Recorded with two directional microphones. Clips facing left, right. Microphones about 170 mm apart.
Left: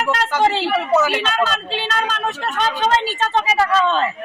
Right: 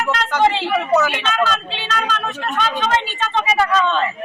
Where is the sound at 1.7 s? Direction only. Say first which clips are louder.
Left 1 dB; 35° left (ahead or behind).